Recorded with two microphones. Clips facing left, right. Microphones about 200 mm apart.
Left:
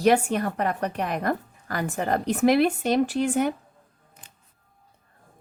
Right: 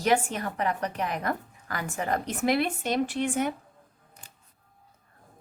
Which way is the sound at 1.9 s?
35° left (ahead or behind).